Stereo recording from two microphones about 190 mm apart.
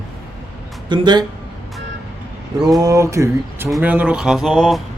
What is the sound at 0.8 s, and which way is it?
Speech, 25° right (ahead or behind).